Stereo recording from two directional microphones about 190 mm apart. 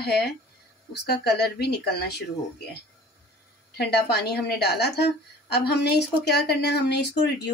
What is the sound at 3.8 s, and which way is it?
Speech, 60° left (ahead or behind).